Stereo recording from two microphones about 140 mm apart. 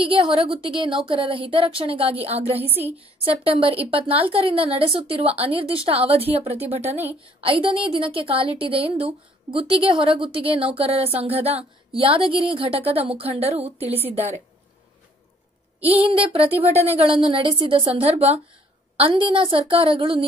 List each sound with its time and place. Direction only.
0.0 s a woman's voice: 40° right (ahead or behind)
16.0 s a woman's voice: 40° right (ahead or behind)